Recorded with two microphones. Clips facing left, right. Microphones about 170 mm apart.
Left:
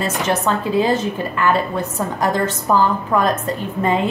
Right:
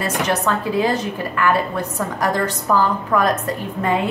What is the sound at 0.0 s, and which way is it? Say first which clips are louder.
A woman's voice: left 1 dB; 25° left (ahead or behind).